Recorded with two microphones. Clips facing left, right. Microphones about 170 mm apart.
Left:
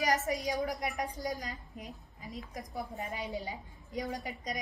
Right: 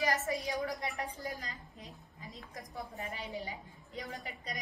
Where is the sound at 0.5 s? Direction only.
20° left (ahead or behind).